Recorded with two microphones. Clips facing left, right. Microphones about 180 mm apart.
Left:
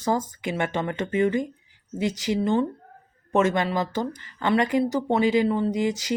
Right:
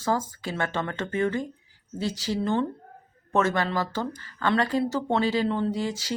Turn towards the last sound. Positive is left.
turn(degrees=20)  # may be behind; listen again after turning